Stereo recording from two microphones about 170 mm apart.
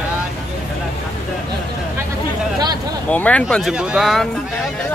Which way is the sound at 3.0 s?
10° left (ahead or behind).